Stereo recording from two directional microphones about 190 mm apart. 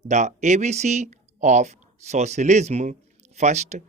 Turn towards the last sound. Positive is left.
turn(degrees=-35)  # may be behind; listen again after turning